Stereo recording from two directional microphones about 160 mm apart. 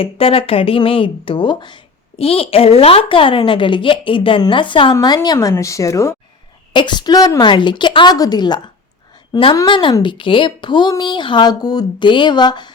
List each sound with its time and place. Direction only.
0.0 s a woman's voice: 35° left (ahead or behind)